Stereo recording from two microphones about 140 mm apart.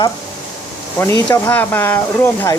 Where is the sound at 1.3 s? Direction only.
15° left (ahead or behind).